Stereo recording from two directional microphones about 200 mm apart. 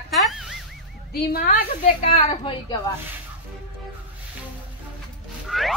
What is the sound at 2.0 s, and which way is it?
Speech, 30° left (ahead or behind).